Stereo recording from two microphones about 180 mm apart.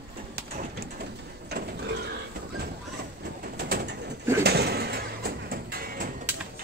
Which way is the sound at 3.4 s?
60° right (ahead or behind).